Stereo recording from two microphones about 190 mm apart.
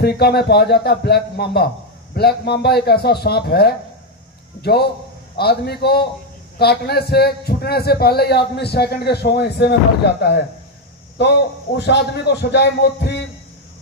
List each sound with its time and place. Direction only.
0.0 s a man's voice: 60° left (ahead or behind)
11.1 s a man's voice: 65° left (ahead or behind)